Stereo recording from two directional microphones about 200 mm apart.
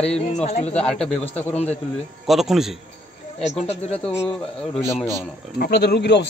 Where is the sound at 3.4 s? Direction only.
35° left (ahead or behind).